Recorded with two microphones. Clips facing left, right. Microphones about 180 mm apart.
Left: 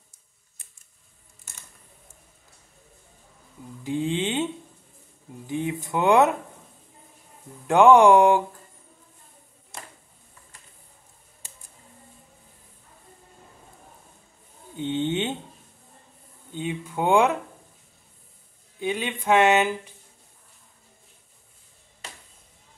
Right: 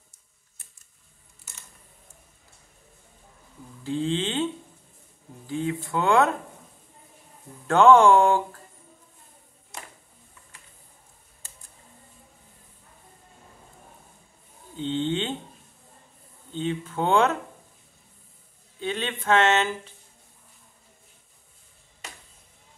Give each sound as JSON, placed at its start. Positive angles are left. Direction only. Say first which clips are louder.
{"t": 3.8, "sound": "speech", "louder": "left 1 dB", "side_deg": 15}
{"t": 5.5, "sound": "speech", "louder": "even", "side_deg": 15}
{"t": 7.6, "sound": "speech", "louder": "left 1 dB", "side_deg": 15}
{"t": 14.8, "sound": "a sound", "louder": "left 1 dB", "side_deg": 15}
{"t": 16.5, "sound": "speech", "louder": "right 1 dB", "side_deg": 15}
{"t": 18.8, "sound": "speech", "louder": "left 2 dB", "side_deg": 15}